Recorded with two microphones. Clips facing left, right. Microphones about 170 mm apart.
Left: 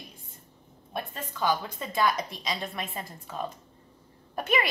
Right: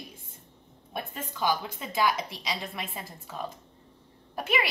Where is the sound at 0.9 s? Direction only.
10° right (ahead or behind).